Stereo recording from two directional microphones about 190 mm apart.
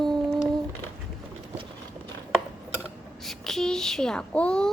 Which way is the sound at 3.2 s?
Centre (ahead or behind).